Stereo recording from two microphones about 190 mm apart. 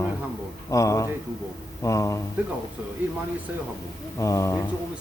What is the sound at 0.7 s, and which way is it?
Speech, 15° left (ahead or behind).